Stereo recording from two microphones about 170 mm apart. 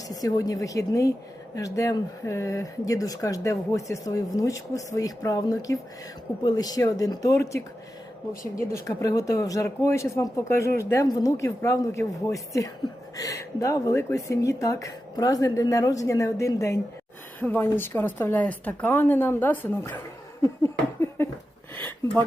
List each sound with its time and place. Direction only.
0.1 s speech: 20° left (ahead or behind)
8.7 s speech: 20° left (ahead or behind)